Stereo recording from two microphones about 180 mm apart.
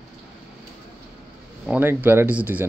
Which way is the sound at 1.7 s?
10° right (ahead or behind).